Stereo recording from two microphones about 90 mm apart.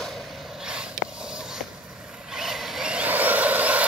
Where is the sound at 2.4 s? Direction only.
5° right (ahead or behind).